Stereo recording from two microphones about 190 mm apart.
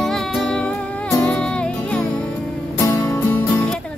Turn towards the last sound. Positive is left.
turn(degrees=10)  # may be behind; listen again after turning